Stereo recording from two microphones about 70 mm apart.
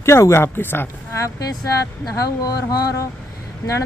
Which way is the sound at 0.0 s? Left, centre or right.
Left.